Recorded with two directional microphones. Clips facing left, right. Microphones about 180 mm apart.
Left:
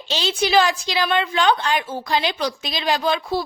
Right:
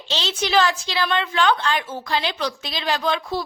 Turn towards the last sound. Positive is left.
turn(degrees=10)  # may be behind; listen again after turning